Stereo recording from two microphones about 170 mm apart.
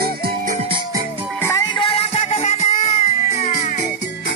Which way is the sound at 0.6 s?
30° right (ahead or behind).